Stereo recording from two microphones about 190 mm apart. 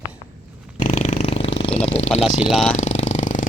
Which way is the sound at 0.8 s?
40° left (ahead or behind).